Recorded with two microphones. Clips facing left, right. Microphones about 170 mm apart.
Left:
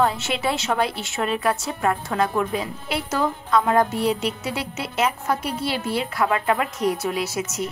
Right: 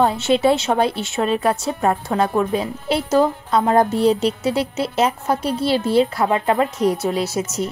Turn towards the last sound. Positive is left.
turn(degrees=-30)  # may be behind; listen again after turning